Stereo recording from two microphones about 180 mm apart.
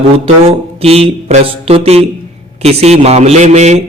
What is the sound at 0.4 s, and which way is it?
A man's voice, 35° right (ahead or behind).